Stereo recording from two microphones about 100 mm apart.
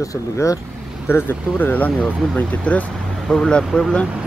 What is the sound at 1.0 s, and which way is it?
Speech, 20° left (ahead or behind).